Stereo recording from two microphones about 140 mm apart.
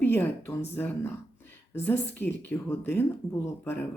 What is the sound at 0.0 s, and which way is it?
A woman's voice, 15° left (ahead or behind).